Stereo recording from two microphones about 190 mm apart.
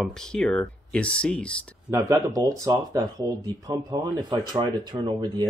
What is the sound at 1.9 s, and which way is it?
Speech, 20° right (ahead or behind).